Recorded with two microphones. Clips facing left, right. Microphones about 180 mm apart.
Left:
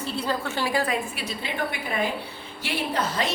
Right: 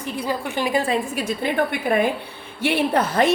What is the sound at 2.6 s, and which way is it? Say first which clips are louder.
Speech: right 8 dB; 60° right (ahead or behind).